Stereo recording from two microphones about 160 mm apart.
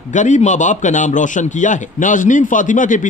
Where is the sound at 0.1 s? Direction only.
50° left (ahead or behind).